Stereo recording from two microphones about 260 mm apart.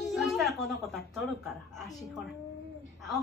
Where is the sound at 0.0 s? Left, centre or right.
Centre.